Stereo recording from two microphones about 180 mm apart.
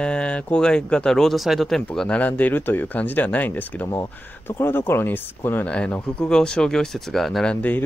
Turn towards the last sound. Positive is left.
turn(degrees=5)  # may be behind; listen again after turning